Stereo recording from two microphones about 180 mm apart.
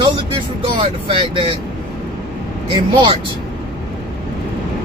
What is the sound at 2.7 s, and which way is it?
Speech, 25° right (ahead or behind).